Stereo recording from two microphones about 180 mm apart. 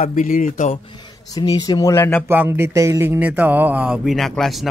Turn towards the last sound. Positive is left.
turn(degrees=0)  # may be behind; listen again after turning